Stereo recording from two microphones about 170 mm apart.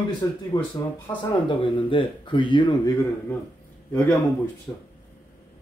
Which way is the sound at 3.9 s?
15° left (ahead or behind).